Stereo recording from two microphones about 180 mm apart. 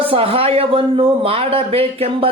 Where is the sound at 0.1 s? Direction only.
30° right (ahead or behind).